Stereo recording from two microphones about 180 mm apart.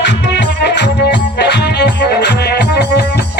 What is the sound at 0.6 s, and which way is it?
Music, 70° left (ahead or behind).